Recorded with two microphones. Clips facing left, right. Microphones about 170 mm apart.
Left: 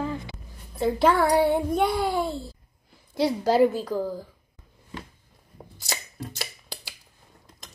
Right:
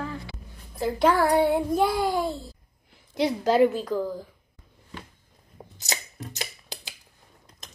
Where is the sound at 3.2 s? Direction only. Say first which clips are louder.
Even; 20° right (ahead or behind).